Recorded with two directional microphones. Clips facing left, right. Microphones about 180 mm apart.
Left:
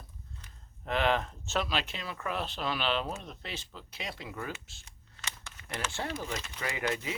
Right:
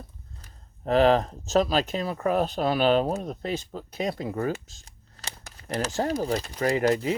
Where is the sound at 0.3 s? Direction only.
40° right (ahead or behind).